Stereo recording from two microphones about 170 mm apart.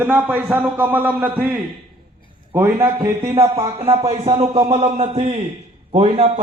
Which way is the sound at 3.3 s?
35° right (ahead or behind).